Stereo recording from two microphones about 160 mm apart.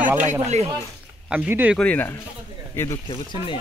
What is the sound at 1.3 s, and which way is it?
Speech, 10° right (ahead or behind).